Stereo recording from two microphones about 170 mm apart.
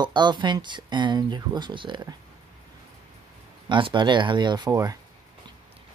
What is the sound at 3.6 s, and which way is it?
Speech, 30° right (ahead or behind).